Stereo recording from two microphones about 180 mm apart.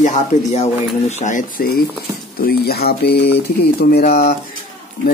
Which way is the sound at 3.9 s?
55° left (ahead or behind).